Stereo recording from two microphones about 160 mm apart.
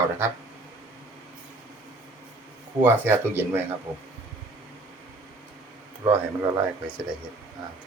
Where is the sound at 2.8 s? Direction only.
15° right (ahead or behind).